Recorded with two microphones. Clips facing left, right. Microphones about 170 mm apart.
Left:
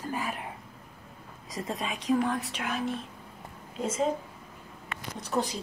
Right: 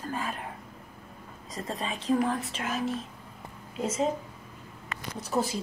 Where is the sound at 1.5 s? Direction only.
20° left (ahead or behind).